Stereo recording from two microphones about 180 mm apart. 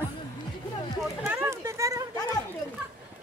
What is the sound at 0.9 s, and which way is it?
Speech, 5° right (ahead or behind).